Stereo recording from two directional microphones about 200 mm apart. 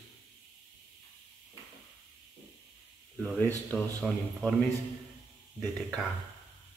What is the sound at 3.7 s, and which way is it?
Speech, 5° left (ahead or behind).